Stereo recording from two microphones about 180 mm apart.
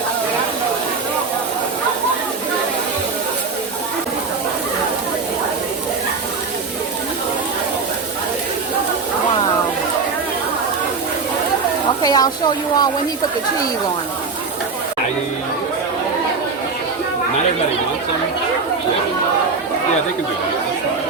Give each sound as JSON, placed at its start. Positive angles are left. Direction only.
{"t": 12.0, "sound": "a woman's voice", "side_deg": 20}